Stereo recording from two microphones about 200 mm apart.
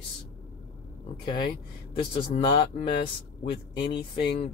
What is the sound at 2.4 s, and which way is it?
Speech, 25° left (ahead or behind).